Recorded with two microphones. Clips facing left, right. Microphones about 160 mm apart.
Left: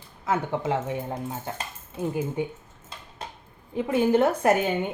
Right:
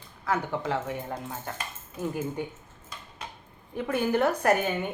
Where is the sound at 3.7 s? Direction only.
20° left (ahead or behind).